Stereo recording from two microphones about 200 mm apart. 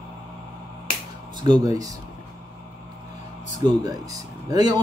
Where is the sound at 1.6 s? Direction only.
15° right (ahead or behind).